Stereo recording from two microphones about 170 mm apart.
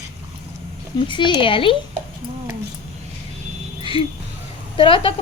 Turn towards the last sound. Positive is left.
turn(degrees=30)  # may be behind; listen again after turning